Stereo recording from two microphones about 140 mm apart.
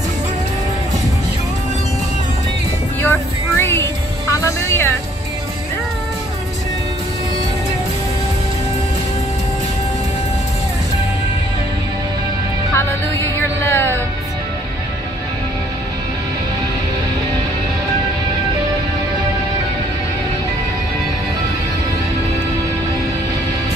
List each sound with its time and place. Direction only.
3.0 s music: 15° left (ahead or behind)
12.7 s music: 20° left (ahead or behind)